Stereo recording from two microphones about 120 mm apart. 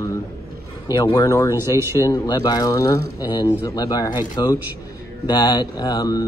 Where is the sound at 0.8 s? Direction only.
35° left (ahead or behind).